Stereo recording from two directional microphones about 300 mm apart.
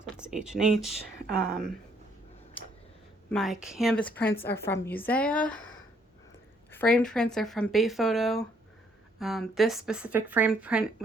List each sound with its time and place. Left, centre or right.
0.2 s speech: centre
2.6 s tick-tock: centre
3.2 s speech: centre
6.7 s speech: centre